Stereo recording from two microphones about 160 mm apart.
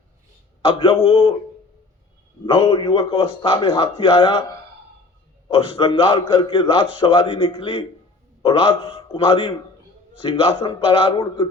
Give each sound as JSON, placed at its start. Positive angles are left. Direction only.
{"t": 0.6, "sound": "a man's voice", "side_deg": 35}
{"t": 2.5, "sound": "a man's voice", "side_deg": 35}
{"t": 5.5, "sound": "a man's voice", "side_deg": 35}